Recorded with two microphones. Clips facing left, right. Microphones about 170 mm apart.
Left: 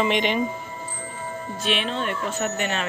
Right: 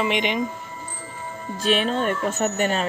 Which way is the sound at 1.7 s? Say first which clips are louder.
Right 5 dB; 40° right (ahead or behind).